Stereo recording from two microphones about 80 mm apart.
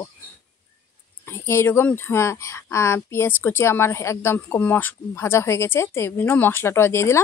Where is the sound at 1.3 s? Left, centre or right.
Left.